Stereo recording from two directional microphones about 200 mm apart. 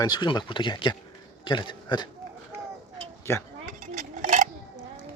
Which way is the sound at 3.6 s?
35° right (ahead or behind).